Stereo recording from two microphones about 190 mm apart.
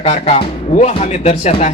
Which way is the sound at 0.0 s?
30° left (ahead or behind).